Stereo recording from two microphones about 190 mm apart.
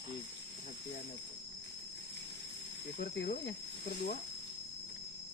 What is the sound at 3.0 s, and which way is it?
Speech, 60° left (ahead or behind).